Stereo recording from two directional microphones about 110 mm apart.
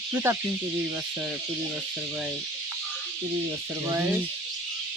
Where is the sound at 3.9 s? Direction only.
15° right (ahead or behind).